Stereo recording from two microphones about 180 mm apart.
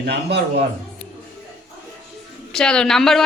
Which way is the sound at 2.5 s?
5° left (ahead or behind).